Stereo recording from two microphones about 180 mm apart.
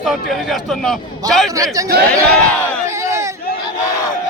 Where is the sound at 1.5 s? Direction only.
20° right (ahead or behind).